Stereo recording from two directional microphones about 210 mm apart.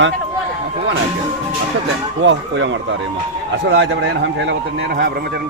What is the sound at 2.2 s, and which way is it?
A man's voice, 60° right (ahead or behind).